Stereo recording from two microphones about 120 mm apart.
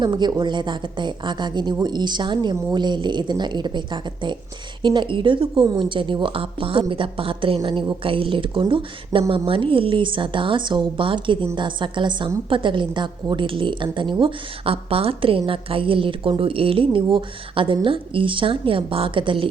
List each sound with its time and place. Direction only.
0.0 s a woman's voice: 35° right (ahead or behind)